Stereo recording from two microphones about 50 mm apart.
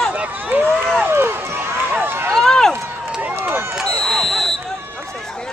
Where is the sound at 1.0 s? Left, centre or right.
Right.